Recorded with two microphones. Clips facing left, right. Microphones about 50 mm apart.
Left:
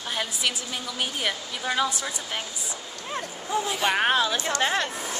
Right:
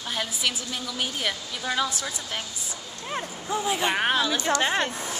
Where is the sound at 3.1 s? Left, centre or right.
Centre.